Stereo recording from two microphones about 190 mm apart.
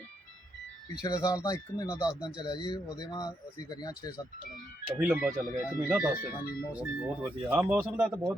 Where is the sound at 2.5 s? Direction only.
25° left (ahead or behind).